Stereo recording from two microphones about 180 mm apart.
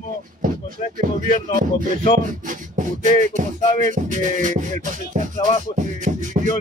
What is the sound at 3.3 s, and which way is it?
Music, 45° right (ahead or behind).